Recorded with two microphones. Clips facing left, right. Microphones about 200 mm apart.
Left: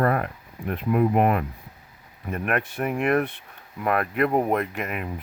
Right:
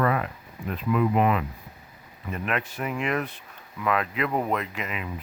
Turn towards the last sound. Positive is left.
turn(degrees=55)  # may be behind; listen again after turning